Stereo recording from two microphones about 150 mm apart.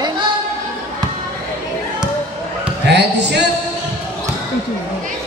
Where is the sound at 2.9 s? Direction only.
90° right.